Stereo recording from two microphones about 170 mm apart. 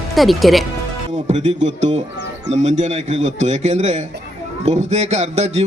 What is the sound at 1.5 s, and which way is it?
A man's voice, 40° right (ahead or behind).